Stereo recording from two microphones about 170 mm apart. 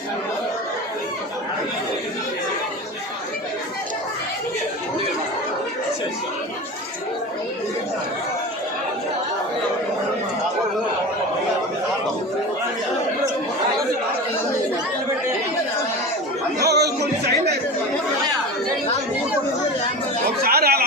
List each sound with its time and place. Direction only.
16.6 s music: 75° right (ahead or behind)
20.4 s chatter: 65° right (ahead or behind)